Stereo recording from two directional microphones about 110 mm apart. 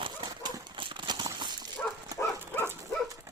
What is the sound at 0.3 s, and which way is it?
Horse, 40° right (ahead or behind).